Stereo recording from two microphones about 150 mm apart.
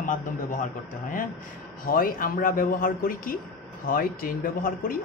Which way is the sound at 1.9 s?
70° left (ahead or behind).